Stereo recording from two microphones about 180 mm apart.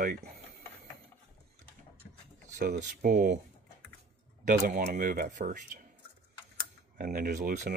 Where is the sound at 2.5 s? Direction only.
45° right (ahead or behind).